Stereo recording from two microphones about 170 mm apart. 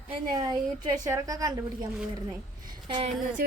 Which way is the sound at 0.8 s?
20° right (ahead or behind).